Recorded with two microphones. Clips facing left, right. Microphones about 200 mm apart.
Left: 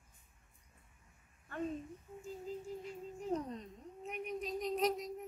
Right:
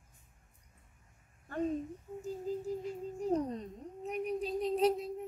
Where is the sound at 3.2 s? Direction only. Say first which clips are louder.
Right 6 dB; 35° right (ahead or behind).